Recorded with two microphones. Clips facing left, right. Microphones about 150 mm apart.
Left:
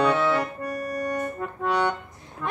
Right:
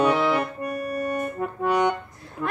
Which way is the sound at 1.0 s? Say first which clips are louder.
Right 2 dB; 10° right (ahead or behind).